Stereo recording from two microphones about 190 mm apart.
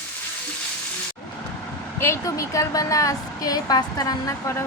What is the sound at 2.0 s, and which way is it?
A woman's voice, 15° left (ahead or behind).